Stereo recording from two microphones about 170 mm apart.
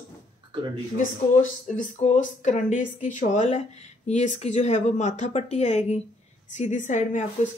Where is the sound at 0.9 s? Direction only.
50° left (ahead or behind).